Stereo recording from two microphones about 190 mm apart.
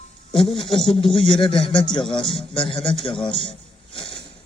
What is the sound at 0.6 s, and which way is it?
A man's voice, 25° left (ahead or behind).